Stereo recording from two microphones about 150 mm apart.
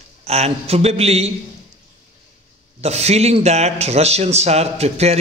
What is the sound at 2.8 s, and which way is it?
A man's voice, 45° right (ahead or behind).